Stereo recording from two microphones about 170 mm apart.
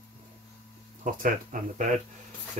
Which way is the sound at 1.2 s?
50° right (ahead or behind).